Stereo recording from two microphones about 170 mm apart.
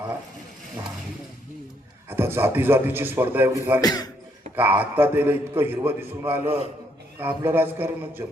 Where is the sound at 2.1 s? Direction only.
15° right (ahead or behind).